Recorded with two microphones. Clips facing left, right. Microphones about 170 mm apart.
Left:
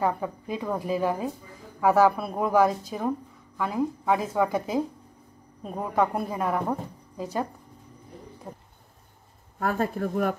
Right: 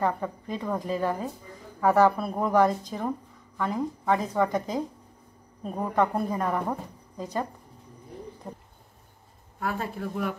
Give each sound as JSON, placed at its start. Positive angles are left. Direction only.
{"t": 0.0, "sound": "a woman's voice", "side_deg": 10}
{"t": 9.6, "sound": "speech", "side_deg": 45}